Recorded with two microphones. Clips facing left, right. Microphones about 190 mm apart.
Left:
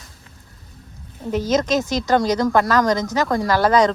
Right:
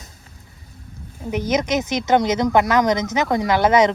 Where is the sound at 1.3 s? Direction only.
20° right (ahead or behind).